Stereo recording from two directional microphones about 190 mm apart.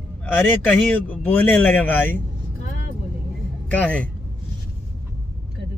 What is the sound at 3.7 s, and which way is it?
Speech, 5° left (ahead or behind).